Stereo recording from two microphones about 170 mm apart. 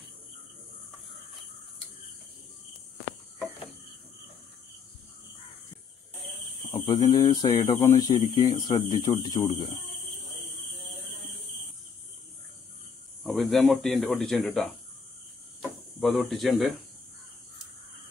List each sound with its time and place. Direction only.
6.9 s speech: 20° left (ahead or behind)
13.2 s speech: centre (ahead or behind)
16.0 s speech: centre (ahead or behind)